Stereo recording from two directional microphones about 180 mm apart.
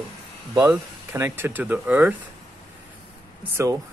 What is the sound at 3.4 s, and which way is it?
Speech, 15° right (ahead or behind).